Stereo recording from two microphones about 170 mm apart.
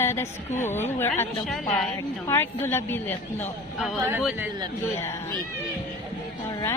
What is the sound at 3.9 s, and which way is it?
Speech, 15° right (ahead or behind).